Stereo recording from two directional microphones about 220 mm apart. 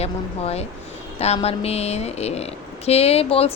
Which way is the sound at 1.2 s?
30° left (ahead or behind).